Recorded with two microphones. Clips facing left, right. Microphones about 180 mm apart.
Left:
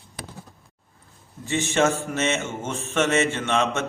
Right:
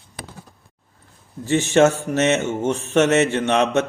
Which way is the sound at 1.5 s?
40° right (ahead or behind).